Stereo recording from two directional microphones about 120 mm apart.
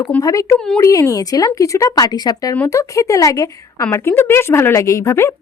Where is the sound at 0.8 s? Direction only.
25° left (ahead or behind).